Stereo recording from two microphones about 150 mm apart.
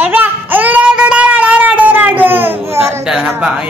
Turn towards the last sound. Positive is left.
turn(degrees=-5)  # may be behind; listen again after turning